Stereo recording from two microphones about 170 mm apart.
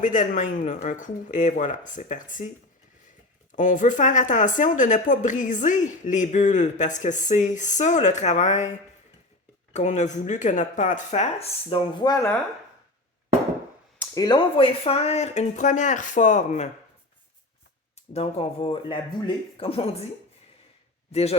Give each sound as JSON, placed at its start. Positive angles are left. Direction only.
{"t": 0.0, "sound": "speech", "side_deg": 50}
{"t": 3.5, "sound": "speech", "side_deg": 50}
{"t": 9.7, "sound": "speech", "side_deg": 45}
{"t": 14.1, "sound": "speech", "side_deg": 25}
{"t": 18.1, "sound": "speech", "side_deg": 40}
{"t": 21.1, "sound": "a man's voice", "side_deg": 40}